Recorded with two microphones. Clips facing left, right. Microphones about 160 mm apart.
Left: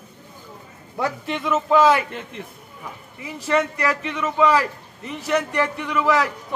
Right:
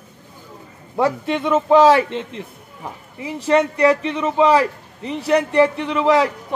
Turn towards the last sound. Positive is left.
turn(degrees=-30)  # may be behind; listen again after turning